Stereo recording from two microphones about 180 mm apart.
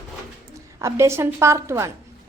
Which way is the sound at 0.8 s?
15° right (ahead or behind).